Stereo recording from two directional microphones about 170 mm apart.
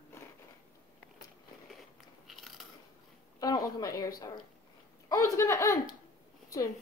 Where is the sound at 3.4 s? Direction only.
20° left (ahead or behind).